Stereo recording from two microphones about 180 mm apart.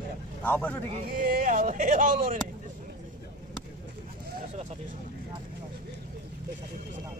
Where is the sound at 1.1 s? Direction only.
50° right (ahead or behind).